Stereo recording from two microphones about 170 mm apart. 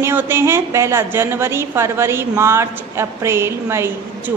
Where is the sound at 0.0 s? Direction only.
15° right (ahead or behind).